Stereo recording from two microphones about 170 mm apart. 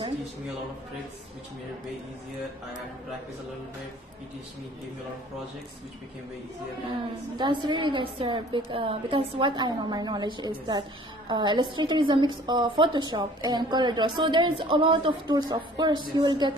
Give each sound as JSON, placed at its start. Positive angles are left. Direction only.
{"t": 7.3, "sound": "a woman's voice", "side_deg": -25}